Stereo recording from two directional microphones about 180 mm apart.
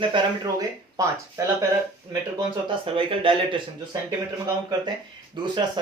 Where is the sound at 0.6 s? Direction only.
20° right (ahead or behind).